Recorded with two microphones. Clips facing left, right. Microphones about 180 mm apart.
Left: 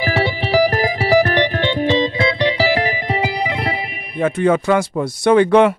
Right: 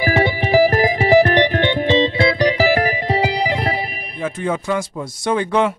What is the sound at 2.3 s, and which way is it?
Music, 45° right (ahead or behind).